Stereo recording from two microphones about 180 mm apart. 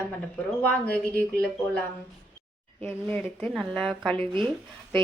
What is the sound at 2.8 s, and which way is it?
Speech, 10° left (ahead or behind).